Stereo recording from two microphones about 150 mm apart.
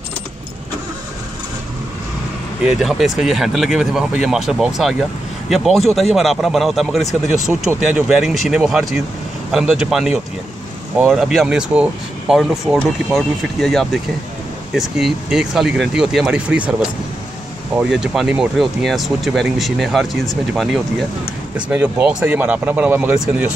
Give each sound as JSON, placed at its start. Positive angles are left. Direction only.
{"t": 2.6, "sound": "speech", "side_deg": -5}
{"t": 17.9, "sound": "speech", "side_deg": -5}